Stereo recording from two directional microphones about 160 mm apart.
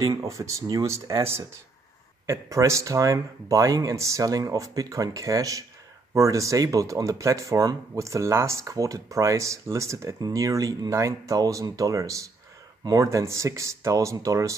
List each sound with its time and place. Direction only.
0.0 s speech: 20° right (ahead or behind)